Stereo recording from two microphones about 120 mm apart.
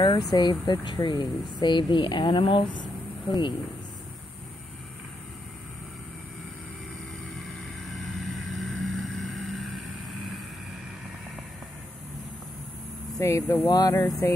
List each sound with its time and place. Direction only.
0.0 s speech: 35° left (ahead or behind)
7.9 s vehicle: centre (ahead or behind)
13.2 s speech: 25° left (ahead or behind)